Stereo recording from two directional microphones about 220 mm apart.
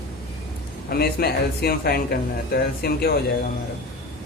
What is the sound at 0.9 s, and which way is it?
Speech, 45° left (ahead or behind).